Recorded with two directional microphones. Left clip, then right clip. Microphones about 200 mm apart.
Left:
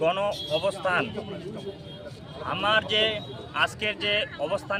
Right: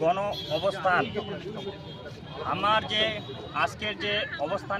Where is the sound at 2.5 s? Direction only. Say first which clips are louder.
Left 2 dB; 10° left (ahead or behind).